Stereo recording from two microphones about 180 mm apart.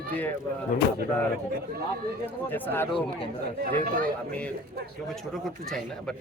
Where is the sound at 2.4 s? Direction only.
10° left (ahead or behind).